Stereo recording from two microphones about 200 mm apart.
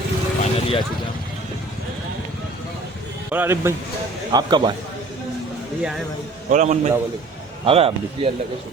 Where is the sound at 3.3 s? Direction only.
10° right (ahead or behind).